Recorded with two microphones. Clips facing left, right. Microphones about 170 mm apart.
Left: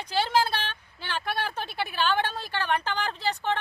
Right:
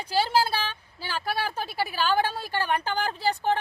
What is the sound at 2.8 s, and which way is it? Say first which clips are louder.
Speech: right 3 dB; 45° right (ahead or behind).